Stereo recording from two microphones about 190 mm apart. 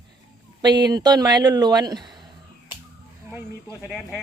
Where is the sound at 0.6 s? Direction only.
20° right (ahead or behind).